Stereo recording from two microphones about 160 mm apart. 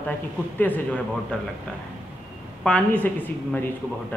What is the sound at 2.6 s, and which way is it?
Speech, 10° left (ahead or behind).